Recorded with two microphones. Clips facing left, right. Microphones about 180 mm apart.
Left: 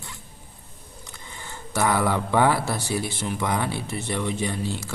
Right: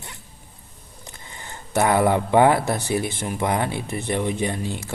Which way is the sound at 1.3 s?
15° right (ahead or behind).